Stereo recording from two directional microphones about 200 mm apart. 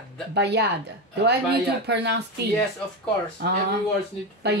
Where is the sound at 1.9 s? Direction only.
60° right (ahead or behind).